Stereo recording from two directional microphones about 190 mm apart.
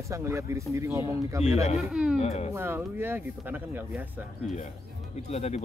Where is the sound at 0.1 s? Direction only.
15° right (ahead or behind).